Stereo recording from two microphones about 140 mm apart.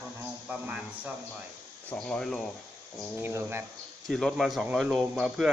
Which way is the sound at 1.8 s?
5° left (ahead or behind).